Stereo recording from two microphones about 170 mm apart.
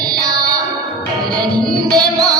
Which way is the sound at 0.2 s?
20° right (ahead or behind).